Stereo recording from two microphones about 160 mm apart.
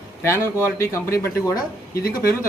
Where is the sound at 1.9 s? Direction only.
70° left (ahead or behind).